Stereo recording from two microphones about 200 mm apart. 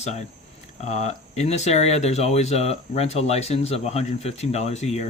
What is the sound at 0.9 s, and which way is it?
Speech, 35° left (ahead or behind).